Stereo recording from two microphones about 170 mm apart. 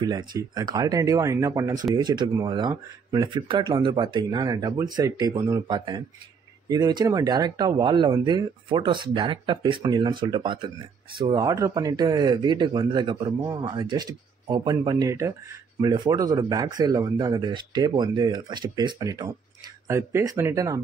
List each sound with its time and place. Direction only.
0.0 s speech: 25° right (ahead or behind)